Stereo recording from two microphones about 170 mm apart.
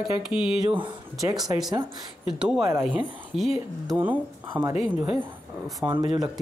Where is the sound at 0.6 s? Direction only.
30° right (ahead or behind).